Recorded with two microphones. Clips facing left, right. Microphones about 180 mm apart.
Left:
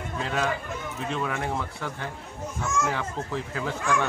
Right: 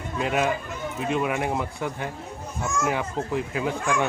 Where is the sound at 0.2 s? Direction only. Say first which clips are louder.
Right 4 dB; 15° right (ahead or behind).